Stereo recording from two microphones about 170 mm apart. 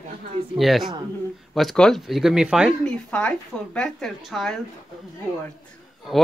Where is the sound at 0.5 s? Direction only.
Centre (ahead or behind).